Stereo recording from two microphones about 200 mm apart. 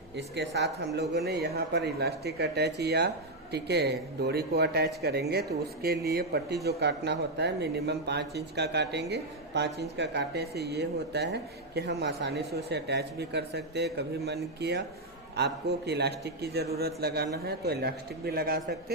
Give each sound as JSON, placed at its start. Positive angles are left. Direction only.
{"t": 0.2, "sound": "speech", "side_deg": -60}